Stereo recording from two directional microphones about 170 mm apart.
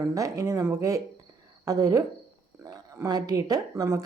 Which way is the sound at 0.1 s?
20° right (ahead or behind).